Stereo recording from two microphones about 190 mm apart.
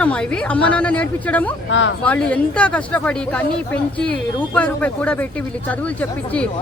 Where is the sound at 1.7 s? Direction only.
80° left.